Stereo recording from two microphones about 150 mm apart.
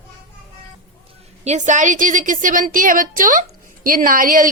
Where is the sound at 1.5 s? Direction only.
55° right (ahead or behind).